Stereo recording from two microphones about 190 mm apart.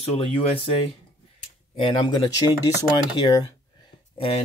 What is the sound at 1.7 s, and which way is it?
Speech, 25° left (ahead or behind).